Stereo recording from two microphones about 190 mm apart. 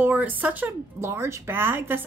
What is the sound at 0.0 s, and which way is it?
Speech, 10° right (ahead or behind).